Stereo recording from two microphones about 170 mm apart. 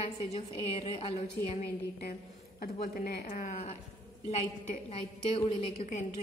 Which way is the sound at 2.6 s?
60° left (ahead or behind).